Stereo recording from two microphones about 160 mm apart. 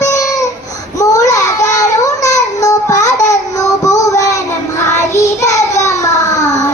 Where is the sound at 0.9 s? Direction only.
20° left (ahead or behind).